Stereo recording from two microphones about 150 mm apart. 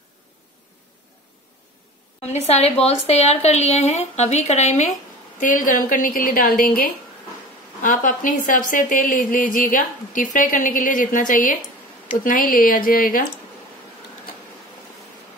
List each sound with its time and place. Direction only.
2.4 s a woman's voice: 45° left (ahead or behind)
5.4 s a woman's voice: 60° left (ahead or behind)